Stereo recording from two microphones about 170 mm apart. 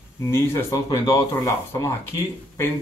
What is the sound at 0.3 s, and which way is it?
A man's voice, 15° left (ahead or behind).